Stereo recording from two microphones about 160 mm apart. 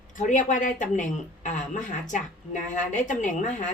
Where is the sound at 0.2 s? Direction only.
50° left (ahead or behind).